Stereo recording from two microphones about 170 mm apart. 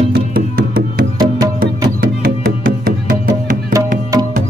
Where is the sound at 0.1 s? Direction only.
60° right (ahead or behind).